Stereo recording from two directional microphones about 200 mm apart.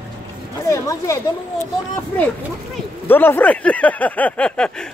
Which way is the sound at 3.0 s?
10° left (ahead or behind).